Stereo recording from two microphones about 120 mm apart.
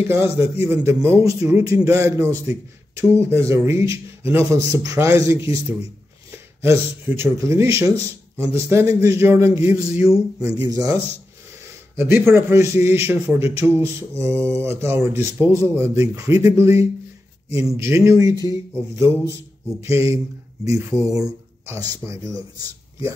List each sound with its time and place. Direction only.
0.1 s speech: 20° right (ahead or behind)
12.0 s speech: 20° right (ahead or behind)